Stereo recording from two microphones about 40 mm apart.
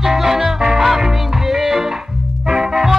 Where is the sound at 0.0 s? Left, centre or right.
Centre.